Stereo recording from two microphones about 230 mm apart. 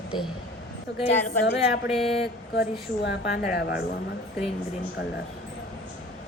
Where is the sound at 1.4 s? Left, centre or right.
Left.